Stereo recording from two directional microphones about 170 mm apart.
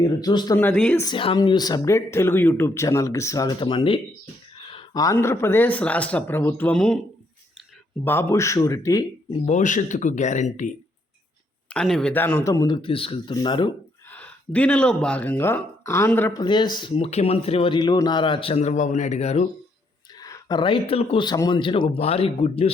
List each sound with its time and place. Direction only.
0.0 s speech: 20° left (ahead or behind)
0.6 s speech: 10° left (ahead or behind)
1.0 s speech: 30° left (ahead or behind); by 7.0 s 5° left (ahead or behind)
8.0 s speech: 15° left (ahead or behind)
9.5 s speech: 45° left (ahead or behind)
11.7 s speech: 5° left (ahead or behind); by 13.7 s 30° left (ahead or behind)
14.1 s speech: 10° left (ahead or behind)
16.4 s speech: 25° left (ahead or behind)
20.1 s speech: 20° left (ahead or behind); by 22.7 s 35° left (ahead or behind)